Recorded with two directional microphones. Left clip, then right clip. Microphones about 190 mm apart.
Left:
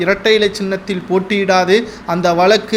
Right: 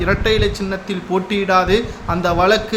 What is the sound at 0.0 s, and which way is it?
A man's voice, 20° left (ahead or behind).